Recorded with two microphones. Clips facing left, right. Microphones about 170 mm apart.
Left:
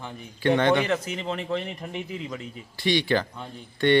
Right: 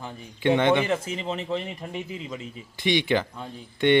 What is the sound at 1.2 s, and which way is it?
Speech, centre (ahead or behind).